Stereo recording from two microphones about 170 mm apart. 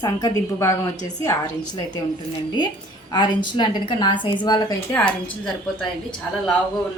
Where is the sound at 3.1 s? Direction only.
25° left (ahead or behind).